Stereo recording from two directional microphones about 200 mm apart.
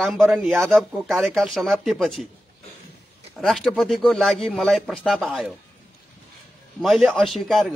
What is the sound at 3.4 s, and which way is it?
Speech, centre (ahead or behind).